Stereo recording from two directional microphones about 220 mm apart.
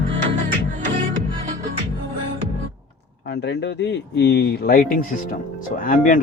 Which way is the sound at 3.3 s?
50° left (ahead or behind).